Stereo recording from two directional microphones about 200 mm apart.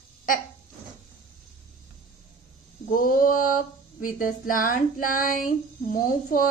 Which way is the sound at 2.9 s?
45° left (ahead or behind).